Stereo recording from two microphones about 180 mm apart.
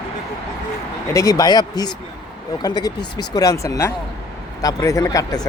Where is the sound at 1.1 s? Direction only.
20° left (ahead or behind).